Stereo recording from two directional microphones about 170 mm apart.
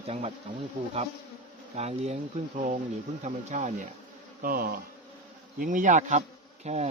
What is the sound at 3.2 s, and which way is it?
Insect, 45° right (ahead or behind).